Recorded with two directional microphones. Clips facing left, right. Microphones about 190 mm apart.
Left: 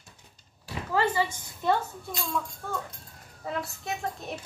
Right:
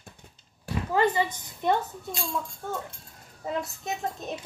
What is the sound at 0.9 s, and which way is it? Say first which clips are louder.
Speech: right 2 dB; 20° right (ahead or behind).